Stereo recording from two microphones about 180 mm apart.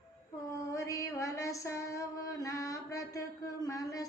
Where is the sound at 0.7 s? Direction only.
15° left (ahead or behind).